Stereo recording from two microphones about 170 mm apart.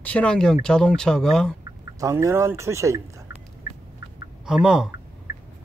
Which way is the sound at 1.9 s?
20° right (ahead or behind).